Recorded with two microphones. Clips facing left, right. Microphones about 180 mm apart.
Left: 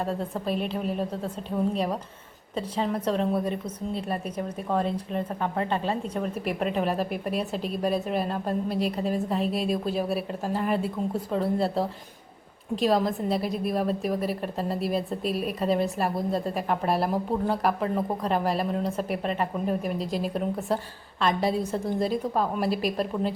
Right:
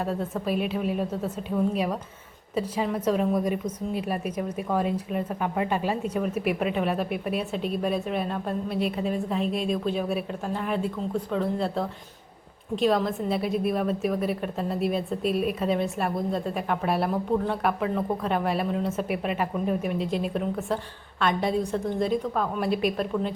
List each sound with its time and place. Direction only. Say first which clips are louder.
0.0 s a woman's voice: right 1 dB; 5° right (ahead or behind)